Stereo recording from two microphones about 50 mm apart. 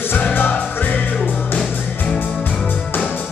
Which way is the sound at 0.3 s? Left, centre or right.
Left.